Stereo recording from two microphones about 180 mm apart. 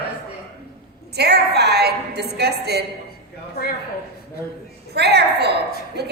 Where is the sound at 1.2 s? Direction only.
65° right (ahead or behind).